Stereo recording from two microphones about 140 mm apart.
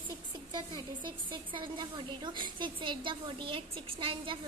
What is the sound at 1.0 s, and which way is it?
A woman's voice, 35° right (ahead or behind).